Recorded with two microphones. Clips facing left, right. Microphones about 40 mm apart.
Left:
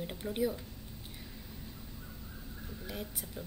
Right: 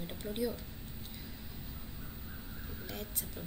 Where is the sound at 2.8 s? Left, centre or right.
Centre.